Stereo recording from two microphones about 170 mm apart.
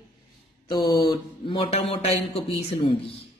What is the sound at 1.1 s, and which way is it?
A man's voice, 30° left (ahead or behind).